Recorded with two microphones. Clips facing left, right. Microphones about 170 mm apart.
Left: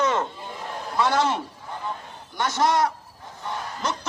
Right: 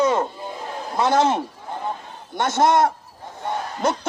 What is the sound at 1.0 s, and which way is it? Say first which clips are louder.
Speech: right 4 dB; 45° right (ahead or behind).